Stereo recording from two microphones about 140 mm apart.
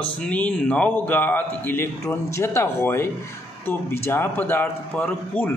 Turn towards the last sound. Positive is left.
turn(degrees=10)  # may be behind; listen again after turning